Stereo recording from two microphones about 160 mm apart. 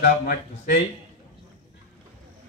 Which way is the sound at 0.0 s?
60° left (ahead or behind).